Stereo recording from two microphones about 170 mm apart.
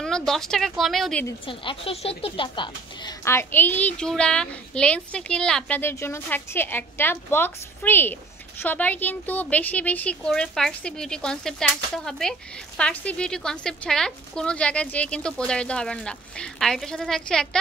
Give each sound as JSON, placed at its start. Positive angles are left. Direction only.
{"t": 0.0, "sound": "a child's voice", "side_deg": 5}
{"t": 1.4, "sound": "speech", "side_deg": 30}
{"t": 3.3, "sound": "a child's voice", "side_deg": 10}